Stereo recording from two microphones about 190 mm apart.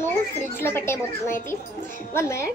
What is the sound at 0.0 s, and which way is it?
A child's voice, 10° left (ahead or behind).